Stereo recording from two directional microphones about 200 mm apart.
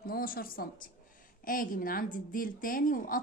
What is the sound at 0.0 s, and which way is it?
A woman's voice, 45° left (ahead or behind).